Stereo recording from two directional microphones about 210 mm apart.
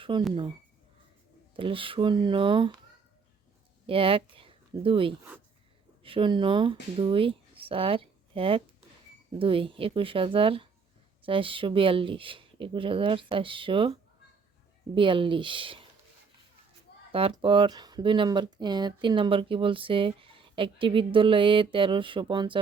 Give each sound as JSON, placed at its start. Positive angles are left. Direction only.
{"t": 0.1, "sound": "speech", "side_deg": -20}
{"t": 1.5, "sound": "speech", "side_deg": -25}
{"t": 3.8, "sound": "speech", "side_deg": -25}
{"t": 14.9, "sound": "speech", "side_deg": -25}
{"t": 17.1, "sound": "speech", "side_deg": -25}